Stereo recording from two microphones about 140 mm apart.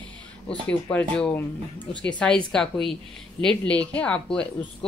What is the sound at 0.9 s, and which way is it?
A woman's voice, 10° left (ahead or behind).